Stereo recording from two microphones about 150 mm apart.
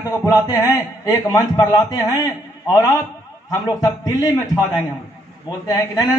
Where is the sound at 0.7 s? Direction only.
25° left (ahead or behind).